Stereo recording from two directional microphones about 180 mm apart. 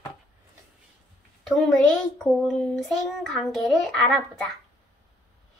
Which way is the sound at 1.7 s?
5° left (ahead or behind).